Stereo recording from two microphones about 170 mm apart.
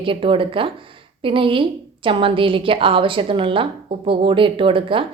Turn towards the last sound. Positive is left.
turn(degrees=-30)  # may be behind; listen again after turning